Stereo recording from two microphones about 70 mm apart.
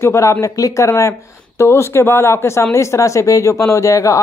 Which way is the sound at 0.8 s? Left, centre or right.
Left.